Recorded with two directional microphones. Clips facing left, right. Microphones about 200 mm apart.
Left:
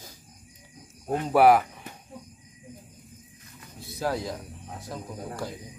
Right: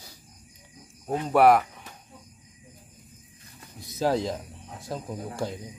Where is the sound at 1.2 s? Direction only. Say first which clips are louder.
Even; centre (ahead or behind).